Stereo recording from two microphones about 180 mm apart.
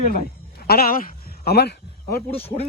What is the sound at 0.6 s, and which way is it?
A man's voice, 55° left (ahead or behind).